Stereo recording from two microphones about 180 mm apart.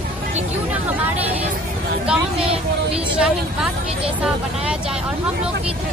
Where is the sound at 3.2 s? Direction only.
5° right (ahead or behind).